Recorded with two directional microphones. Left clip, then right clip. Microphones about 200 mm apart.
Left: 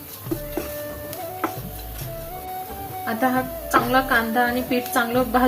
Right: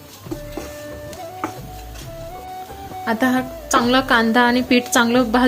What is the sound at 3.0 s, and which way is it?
A woman's voice, 45° right (ahead or behind).